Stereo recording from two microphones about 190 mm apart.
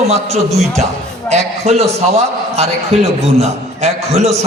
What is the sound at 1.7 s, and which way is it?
A man's voice, 35° right (ahead or behind).